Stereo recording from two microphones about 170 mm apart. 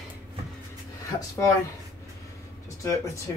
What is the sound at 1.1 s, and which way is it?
Speech, 20° left (ahead or behind).